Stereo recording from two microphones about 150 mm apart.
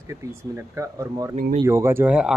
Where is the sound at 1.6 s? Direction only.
15° right (ahead or behind).